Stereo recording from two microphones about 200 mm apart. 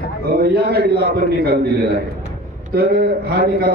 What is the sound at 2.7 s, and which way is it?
Speech, 50° right (ahead or behind).